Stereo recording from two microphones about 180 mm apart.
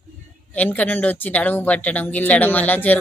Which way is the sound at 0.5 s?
10° left (ahead or behind).